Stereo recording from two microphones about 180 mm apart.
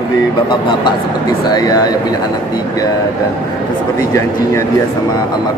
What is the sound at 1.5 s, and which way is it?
Speech, 20° left (ahead or behind).